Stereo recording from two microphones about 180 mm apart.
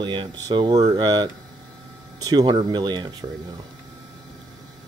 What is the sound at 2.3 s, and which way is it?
Speech, 25° right (ahead or behind).